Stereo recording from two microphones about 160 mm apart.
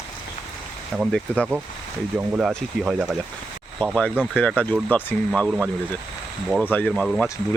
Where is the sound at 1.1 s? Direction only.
5° left (ahead or behind).